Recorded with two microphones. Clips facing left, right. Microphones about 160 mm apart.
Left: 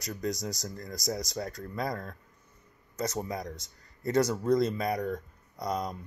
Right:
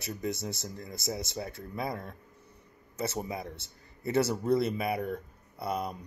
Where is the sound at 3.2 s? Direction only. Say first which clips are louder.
Left 1 dB; 5° right (ahead or behind).